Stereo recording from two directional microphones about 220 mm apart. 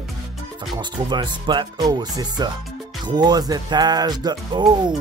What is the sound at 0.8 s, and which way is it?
Speech, 20° right (ahead or behind).